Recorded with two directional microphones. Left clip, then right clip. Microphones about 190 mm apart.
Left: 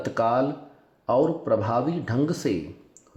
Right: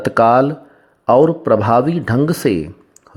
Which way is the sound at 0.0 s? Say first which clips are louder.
Right 11 dB; 45° right (ahead or behind).